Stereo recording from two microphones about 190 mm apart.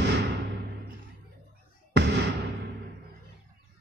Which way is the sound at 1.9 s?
65° right (ahead or behind).